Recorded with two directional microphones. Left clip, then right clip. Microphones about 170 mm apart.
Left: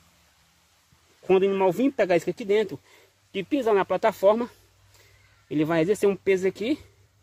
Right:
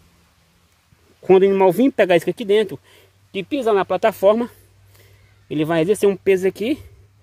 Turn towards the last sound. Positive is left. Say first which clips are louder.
# right 5 dB
turn(degrees=-35)  # may be behind; listen again after turning